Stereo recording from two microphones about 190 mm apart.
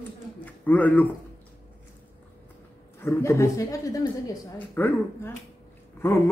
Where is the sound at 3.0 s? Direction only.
15° left (ahead or behind).